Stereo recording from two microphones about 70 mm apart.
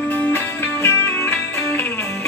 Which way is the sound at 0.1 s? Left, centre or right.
Left.